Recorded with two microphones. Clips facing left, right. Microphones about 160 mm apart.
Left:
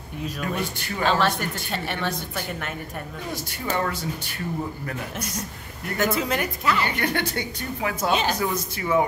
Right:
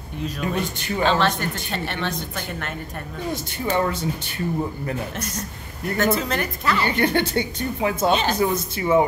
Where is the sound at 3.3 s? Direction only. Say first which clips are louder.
Right 4 dB; 25° right (ahead or behind).